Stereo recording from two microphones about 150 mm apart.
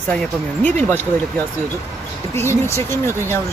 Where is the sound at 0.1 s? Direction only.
10° left (ahead or behind).